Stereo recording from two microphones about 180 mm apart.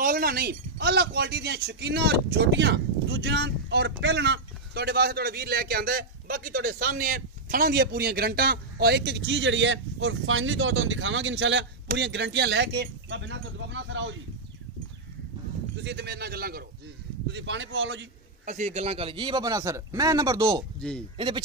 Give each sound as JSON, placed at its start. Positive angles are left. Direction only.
{"t": 0.0, "sound": "a man's voice", "side_deg": -55}
{"t": 15.7, "sound": "a man's voice", "side_deg": -70}
{"t": 17.3, "sound": "speech", "side_deg": -80}
{"t": 18.4, "sound": "a man's voice", "side_deg": -45}